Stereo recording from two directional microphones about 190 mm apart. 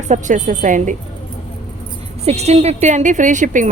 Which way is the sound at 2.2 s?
35° right (ahead or behind).